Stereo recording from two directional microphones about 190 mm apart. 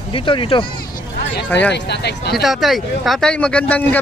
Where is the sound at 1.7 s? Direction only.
60° left (ahead or behind).